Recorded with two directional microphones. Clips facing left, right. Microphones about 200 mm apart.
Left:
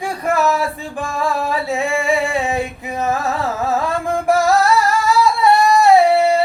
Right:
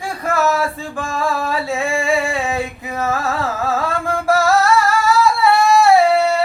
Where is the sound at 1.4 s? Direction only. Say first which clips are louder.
Left 1 dB; 20° left (ahead or behind).